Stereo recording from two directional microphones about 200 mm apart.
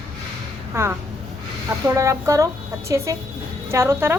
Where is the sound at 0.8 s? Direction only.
15° right (ahead or behind).